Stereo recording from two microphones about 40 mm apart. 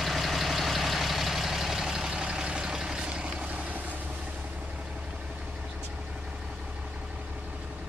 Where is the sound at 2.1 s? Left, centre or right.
Right.